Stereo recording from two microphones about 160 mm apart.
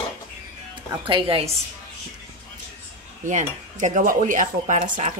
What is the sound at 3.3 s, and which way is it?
Speech, 50° right (ahead or behind).